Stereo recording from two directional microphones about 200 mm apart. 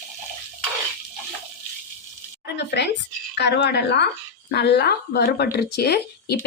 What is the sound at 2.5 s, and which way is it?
Speech, 60° left (ahead or behind).